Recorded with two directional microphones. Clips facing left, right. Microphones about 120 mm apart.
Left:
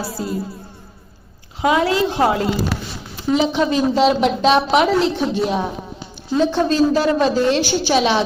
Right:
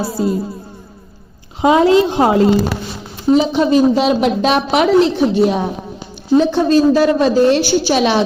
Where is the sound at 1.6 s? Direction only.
25° right (ahead or behind).